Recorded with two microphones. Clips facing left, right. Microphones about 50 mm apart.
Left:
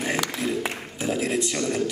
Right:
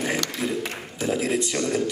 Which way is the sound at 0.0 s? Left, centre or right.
Centre.